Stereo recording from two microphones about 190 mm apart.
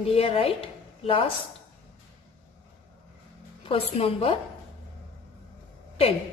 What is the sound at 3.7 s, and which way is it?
Speech, 30° left (ahead or behind).